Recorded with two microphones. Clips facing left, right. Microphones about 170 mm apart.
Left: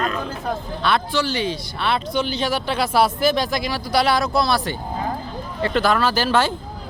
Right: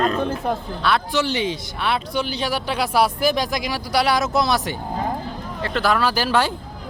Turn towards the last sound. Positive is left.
turn(degrees=-10)  # may be behind; listen again after turning